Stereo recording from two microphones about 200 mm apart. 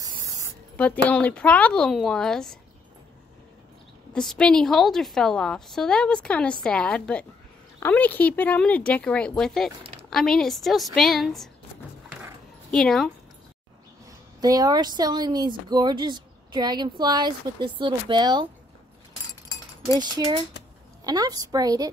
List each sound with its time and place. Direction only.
0.7 s a woman's voice: 5° left (ahead or behind)
4.1 s a woman's voice: 5° left (ahead or behind)
12.7 s a woman's voice: centre (ahead or behind)
14.4 s speech: 20° right (ahead or behind)
20.0 s speech: 25° right (ahead or behind)